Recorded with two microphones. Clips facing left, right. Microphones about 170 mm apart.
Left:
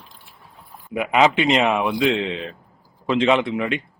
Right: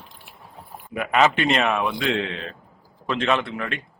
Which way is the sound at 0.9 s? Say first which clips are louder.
Left 2 dB; 20° left (ahead or behind).